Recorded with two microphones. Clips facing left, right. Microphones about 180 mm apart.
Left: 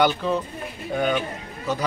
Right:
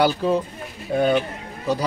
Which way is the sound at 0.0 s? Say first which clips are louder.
Right 2 dB; 35° right (ahead or behind).